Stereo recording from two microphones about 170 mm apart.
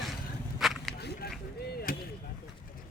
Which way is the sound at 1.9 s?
55° left (ahead or behind).